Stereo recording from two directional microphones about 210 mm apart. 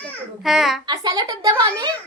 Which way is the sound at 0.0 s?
Centre (ahead or behind).